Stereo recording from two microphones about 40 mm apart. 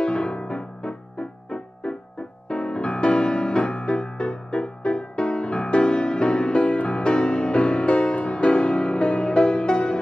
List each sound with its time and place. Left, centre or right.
0.0 s music: left
3.7 s music: left
4.0 s music: left